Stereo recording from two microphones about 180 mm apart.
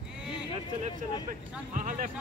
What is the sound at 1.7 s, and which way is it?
Speech, 45° right (ahead or behind).